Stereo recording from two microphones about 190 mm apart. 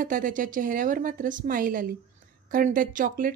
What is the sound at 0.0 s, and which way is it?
Speech, 45° right (ahead or behind).